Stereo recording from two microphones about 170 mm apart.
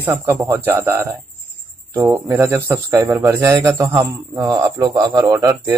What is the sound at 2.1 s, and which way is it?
A man's voice, 15° right (ahead or behind).